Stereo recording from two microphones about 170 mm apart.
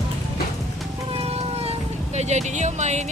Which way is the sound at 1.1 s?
35° right (ahead or behind).